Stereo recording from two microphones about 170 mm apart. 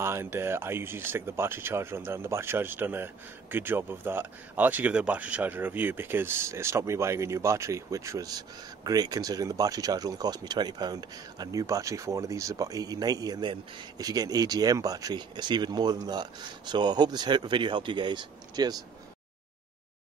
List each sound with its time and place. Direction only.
0.0 s speech: 15° right (ahead or behind)